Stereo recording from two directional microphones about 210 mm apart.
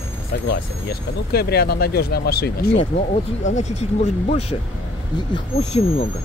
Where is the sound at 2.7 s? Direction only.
30° left (ahead or behind).